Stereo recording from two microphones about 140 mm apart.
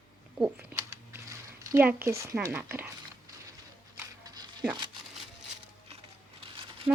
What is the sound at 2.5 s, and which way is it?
Speech, 15° right (ahead or behind).